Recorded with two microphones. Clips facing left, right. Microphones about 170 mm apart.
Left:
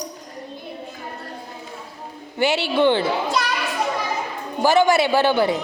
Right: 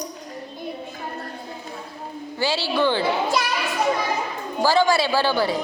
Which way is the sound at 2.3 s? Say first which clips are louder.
Left 4 dB; 20° left (ahead or behind).